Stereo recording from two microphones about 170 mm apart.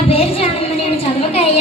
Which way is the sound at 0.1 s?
35° left (ahead or behind).